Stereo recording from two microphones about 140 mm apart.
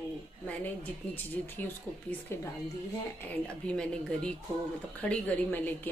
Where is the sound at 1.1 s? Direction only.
15° left (ahead or behind).